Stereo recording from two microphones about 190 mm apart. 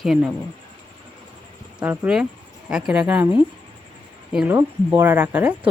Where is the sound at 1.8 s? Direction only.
5° right (ahead or behind).